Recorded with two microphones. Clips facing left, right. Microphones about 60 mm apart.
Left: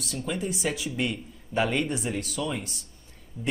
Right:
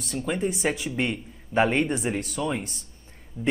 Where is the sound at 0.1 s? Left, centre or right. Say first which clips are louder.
Right 4 dB; right.